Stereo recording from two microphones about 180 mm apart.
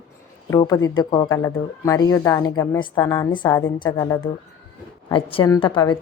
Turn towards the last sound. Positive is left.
turn(degrees=25)  # may be behind; listen again after turning